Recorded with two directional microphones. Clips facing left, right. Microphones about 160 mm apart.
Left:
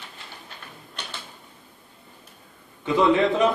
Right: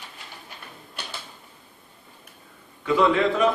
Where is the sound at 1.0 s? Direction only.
10° right (ahead or behind).